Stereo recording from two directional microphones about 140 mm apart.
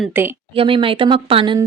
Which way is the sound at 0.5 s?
40° right (ahead or behind).